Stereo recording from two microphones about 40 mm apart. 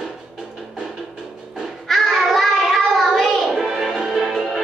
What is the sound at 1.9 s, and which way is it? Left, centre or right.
Child singing, centre.